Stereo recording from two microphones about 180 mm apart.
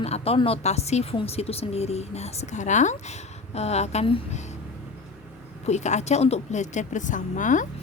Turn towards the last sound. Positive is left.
turn(degrees=45)  # may be behind; listen again after turning